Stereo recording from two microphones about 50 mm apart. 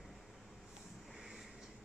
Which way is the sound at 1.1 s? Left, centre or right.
Centre.